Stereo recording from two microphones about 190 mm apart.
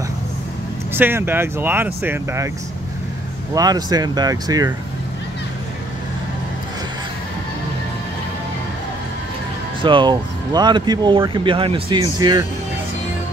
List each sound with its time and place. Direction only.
0.9 s speech: 10° right (ahead or behind)
3.5 s speech: 20° right (ahead or behind)
9.8 s speech: 25° right (ahead or behind)